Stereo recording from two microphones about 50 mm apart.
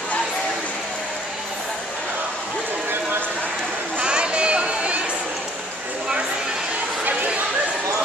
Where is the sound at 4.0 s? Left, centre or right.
Centre.